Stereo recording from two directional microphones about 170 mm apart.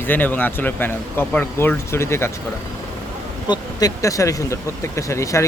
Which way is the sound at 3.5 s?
20° left (ahead or behind).